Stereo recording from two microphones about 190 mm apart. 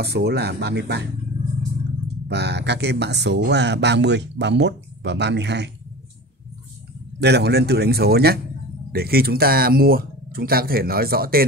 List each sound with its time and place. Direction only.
0.0 s speech: 60° right (ahead or behind)
2.2 s speech: 60° right (ahead or behind)
7.2 s speech: 60° right (ahead or behind)